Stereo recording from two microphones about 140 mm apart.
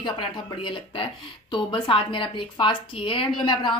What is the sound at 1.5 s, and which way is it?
A woman's voice, 35° left (ahead or behind).